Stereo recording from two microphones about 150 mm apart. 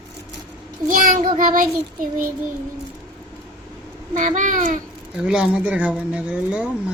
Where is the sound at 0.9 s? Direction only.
65° right (ahead or behind).